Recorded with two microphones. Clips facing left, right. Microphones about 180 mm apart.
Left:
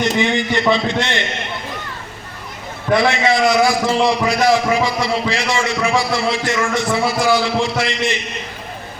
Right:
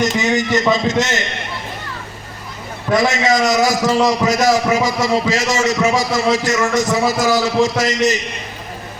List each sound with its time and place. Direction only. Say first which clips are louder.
0.0 s a man's voice: right 1 dB; 45° right (ahead or behind)
2.9 s a man's voice: even; 40° right (ahead or behind)